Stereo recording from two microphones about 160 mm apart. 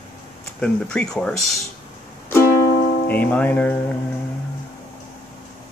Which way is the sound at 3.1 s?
10° left (ahead or behind).